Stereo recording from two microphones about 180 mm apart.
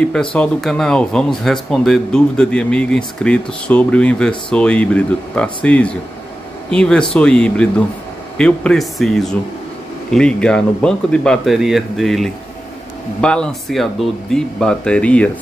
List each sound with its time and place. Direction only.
0.0 s speech: 5° left (ahead or behind)